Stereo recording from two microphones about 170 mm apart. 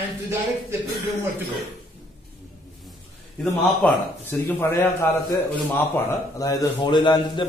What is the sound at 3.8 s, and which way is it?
A man's voice, 5° left (ahead or behind).